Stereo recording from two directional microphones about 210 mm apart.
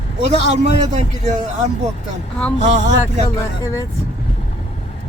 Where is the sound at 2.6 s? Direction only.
35° right (ahead or behind).